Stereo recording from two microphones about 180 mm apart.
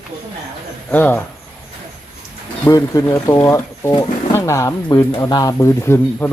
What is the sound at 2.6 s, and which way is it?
Speech, 20° left (ahead or behind).